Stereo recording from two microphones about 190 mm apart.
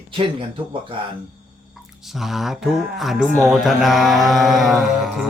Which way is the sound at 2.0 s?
Centre (ahead or behind).